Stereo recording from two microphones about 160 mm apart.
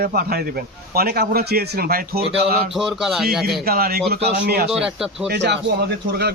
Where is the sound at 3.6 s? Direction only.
70° right (ahead or behind).